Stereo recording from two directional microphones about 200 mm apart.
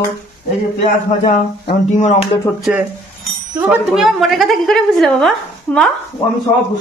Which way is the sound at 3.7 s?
Centre (ahead or behind).